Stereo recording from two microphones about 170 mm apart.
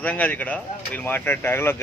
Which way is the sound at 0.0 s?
10° left (ahead or behind).